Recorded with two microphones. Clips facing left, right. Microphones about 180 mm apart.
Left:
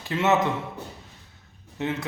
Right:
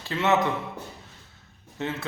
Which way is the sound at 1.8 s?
15° left (ahead or behind).